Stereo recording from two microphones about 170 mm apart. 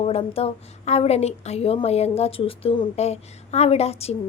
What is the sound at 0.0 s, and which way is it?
A woman's voice, 40° left (ahead or behind).